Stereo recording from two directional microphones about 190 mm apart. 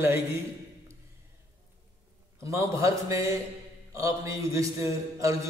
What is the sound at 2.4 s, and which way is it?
A man's voice, 15° right (ahead or behind).